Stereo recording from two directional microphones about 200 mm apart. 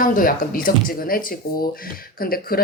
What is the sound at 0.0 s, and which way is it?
Speech, 45° left (ahead or behind).